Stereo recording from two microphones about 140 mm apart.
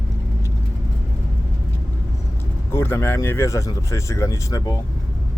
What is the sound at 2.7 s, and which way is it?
Speech, 15° left (ahead or behind).